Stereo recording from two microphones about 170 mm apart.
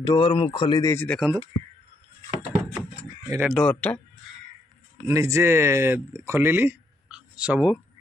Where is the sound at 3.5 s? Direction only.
5° left (ahead or behind).